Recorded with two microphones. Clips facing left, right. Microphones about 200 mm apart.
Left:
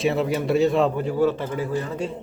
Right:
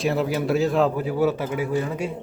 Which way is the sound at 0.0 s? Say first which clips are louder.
Left 1 dB; centre (ahead or behind).